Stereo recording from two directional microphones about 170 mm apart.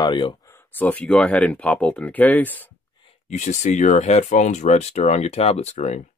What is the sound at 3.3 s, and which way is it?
Speech, 45° left (ahead or behind).